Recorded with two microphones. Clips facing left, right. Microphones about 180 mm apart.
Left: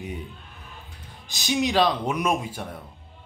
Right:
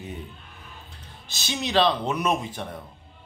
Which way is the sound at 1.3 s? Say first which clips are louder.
Left 6 dB; 15° left (ahead or behind).